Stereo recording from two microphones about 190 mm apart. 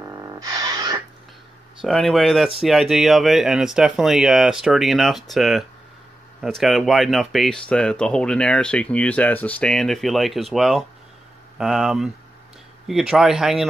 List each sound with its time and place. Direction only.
0.0 s music: 20° right (ahead or behind)
1.8 s speech: centre (ahead or behind)